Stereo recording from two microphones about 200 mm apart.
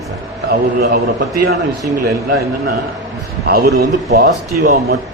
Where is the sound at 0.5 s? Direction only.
50° right (ahead or behind).